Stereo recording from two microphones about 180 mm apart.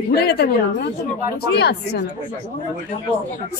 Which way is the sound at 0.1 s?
65° left (ahead or behind).